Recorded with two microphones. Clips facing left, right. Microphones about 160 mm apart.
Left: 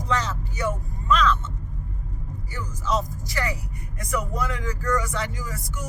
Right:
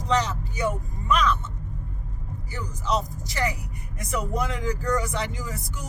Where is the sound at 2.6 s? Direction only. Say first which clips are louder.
Left 1 dB; 20° right (ahead or behind).